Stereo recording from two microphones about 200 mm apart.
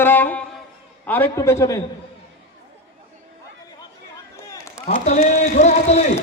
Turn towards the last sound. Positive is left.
turn(degrees=35)  # may be behind; listen again after turning